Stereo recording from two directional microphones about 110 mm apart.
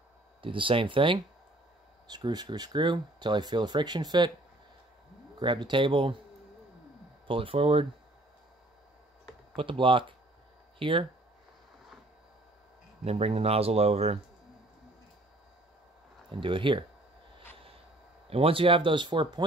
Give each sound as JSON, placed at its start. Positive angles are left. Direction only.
{"t": 0.4, "sound": "speech", "side_deg": -50}
{"t": 5.4, "sound": "speech", "side_deg": -45}
{"t": 7.2, "sound": "speech", "side_deg": -55}
{"t": 9.6, "sound": "speech", "side_deg": -50}
{"t": 13.0, "sound": "speech", "side_deg": -65}
{"t": 16.3, "sound": "speech", "side_deg": -50}
{"t": 18.3, "sound": "speech", "side_deg": -60}